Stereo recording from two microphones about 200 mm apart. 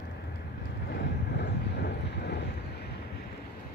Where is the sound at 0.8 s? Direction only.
60° left (ahead or behind).